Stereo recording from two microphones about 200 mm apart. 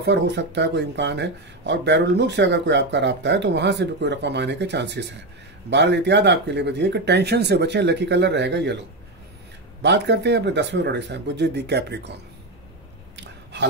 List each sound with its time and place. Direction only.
0.0 s speech: 60° right (ahead or behind)
9.8 s speech: 60° right (ahead or behind)
13.1 s a sound: 60° right (ahead or behind)